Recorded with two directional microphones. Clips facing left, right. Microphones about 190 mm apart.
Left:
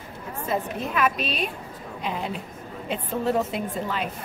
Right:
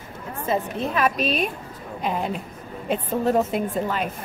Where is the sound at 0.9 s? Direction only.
40° right (ahead or behind).